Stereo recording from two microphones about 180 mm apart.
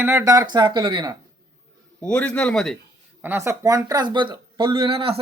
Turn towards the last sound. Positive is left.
turn(degrees=-30)  # may be behind; listen again after turning